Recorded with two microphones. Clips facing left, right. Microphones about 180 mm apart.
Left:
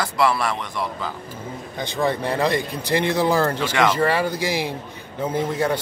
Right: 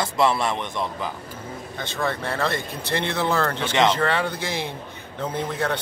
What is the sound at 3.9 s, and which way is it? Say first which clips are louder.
Speech: left 3 dB; 10° left (ahead or behind).